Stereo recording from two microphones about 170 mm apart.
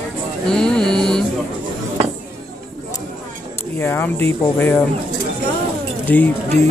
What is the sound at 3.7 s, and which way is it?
Speech, 10° left (ahead or behind).